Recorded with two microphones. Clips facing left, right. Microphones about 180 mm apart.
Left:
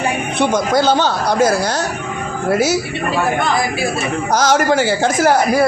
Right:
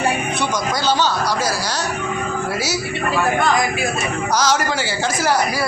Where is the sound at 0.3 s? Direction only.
55° left (ahead or behind).